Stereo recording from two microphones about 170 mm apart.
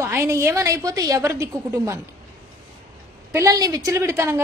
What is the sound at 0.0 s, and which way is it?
A woman's voice, 15° right (ahead or behind).